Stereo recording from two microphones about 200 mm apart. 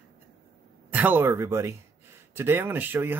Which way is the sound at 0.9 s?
10° right (ahead or behind).